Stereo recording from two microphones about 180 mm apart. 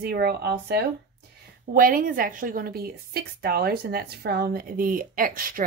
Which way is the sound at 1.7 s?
50° right (ahead or behind).